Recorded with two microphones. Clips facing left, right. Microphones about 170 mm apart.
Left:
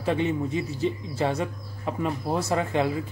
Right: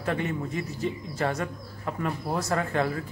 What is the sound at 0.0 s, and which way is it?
Speech, 20° left (ahead or behind).